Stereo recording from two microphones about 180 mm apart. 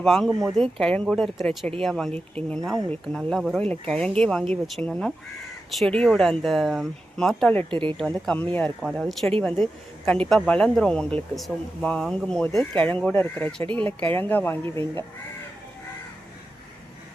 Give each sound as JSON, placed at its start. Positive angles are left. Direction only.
{"t": 0.0, "sound": "speech", "side_deg": 0}
{"t": 0.3, "sound": "speech", "side_deg": -20}
{"t": 0.5, "sound": "speech", "side_deg": 5}
{"t": 7.7, "sound": "speech", "side_deg": -30}
{"t": 8.2, "sound": "speech", "side_deg": 5}
{"t": 14.6, "sound": "speech", "side_deg": -30}